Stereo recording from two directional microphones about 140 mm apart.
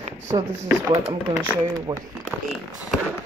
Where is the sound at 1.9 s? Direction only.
25° right (ahead or behind).